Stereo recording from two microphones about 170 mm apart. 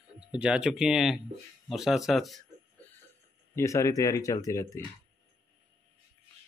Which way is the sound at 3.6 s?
15° left (ahead or behind).